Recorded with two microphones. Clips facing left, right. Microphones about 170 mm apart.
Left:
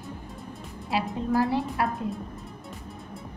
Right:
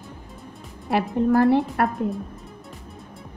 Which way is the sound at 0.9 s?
60° right (ahead or behind).